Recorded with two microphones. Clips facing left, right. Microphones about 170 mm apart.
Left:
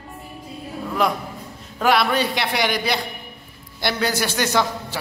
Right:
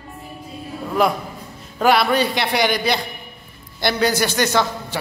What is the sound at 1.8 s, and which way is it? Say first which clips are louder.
A man's voice: right 2 dB; centre (ahead or behind).